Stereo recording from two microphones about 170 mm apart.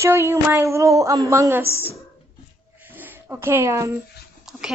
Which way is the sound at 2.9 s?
10° right (ahead or behind).